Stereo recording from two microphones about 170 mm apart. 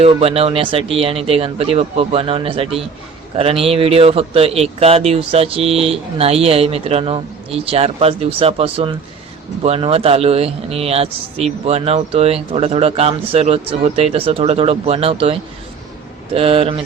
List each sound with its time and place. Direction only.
0.0 s speech: 35° right (ahead or behind)